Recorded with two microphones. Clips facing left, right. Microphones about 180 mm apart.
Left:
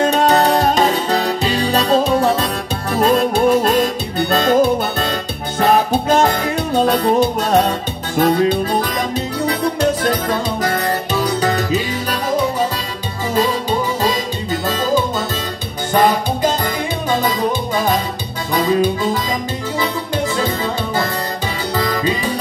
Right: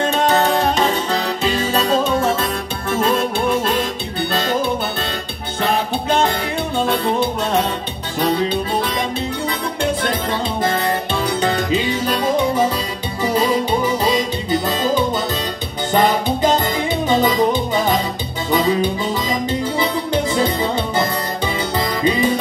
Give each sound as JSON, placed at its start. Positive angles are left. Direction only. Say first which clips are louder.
{"t": 0.0, "sound": "music", "louder": "left 3 dB", "side_deg": 40}